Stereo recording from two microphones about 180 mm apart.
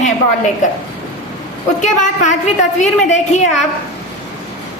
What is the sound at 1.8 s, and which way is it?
A woman's voice, 40° left (ahead or behind).